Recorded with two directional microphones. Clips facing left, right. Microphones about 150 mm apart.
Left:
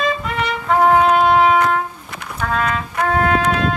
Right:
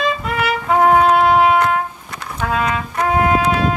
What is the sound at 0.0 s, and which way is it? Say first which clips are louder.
Trumpet: right 1 dB; 5° right (ahead or behind).